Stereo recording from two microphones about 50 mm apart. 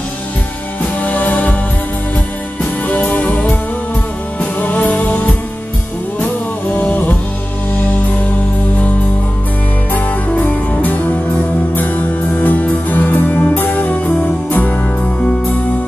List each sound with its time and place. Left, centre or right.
1.0 s music: left
2.9 s music: left
9.9 s music: left